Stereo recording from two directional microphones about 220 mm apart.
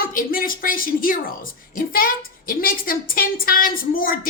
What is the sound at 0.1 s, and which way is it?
A woman's voice, 40° left (ahead or behind).